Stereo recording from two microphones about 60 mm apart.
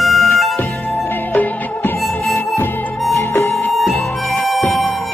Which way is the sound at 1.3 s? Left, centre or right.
Left.